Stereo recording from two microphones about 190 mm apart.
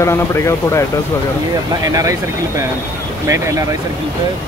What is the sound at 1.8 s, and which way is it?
Speech, 20° right (ahead or behind).